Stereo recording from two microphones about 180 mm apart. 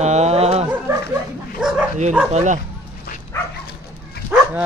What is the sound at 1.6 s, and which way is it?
Speech, 5° right (ahead or behind).